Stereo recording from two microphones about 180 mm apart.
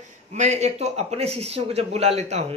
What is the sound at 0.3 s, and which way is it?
Speech, 40° right (ahead or behind).